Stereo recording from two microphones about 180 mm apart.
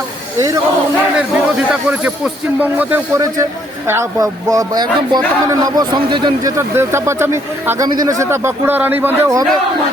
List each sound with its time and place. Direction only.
0.3 s a man's voice: 20° right (ahead or behind)
1.5 s a man's voice: 5° right (ahead or behind); by 6.5 s 25° right (ahead or behind)
6.6 s speech: 15° right (ahead or behind)